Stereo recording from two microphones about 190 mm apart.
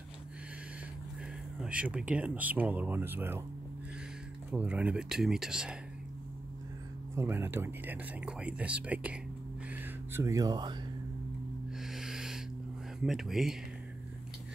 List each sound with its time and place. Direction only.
1.6 s speech: 5° right (ahead or behind)
4.5 s speech: 5° right (ahead or behind)
7.2 s speech: 15° right (ahead or behind)
11.8 s music: centre (ahead or behind)
13.0 s speech: centre (ahead or behind)